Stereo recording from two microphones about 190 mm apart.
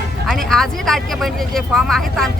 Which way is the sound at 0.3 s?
Centre (ahead or behind).